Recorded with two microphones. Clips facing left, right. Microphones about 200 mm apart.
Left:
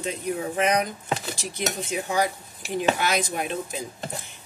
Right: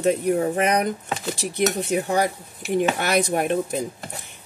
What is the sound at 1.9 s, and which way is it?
Speech, 60° right (ahead or behind).